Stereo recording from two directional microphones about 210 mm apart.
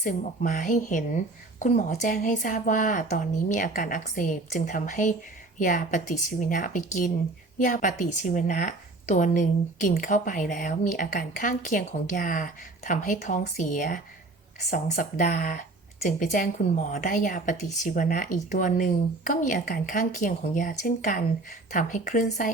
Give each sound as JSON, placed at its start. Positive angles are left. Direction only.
{"t": 0.0, "sound": "a woman's voice", "side_deg": 40}